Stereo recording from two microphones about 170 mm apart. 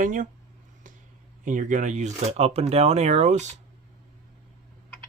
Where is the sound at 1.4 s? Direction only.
50° right (ahead or behind).